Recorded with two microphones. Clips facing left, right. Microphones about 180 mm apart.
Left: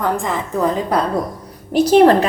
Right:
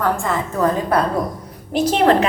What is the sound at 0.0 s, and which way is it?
Speech, 15° left (ahead or behind).